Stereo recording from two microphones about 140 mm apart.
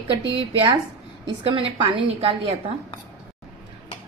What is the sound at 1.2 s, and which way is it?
A woman's voice, 35° right (ahead or behind).